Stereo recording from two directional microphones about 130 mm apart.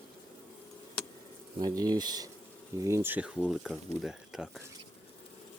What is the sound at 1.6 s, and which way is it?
Speech, 30° right (ahead or behind).